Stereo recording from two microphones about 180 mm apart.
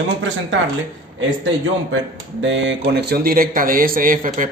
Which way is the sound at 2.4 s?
90° right.